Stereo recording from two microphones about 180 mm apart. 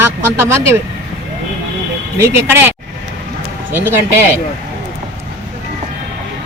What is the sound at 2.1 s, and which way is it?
Speech, 15° right (ahead or behind).